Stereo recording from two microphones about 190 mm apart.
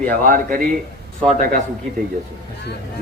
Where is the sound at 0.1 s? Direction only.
45° right (ahead or behind).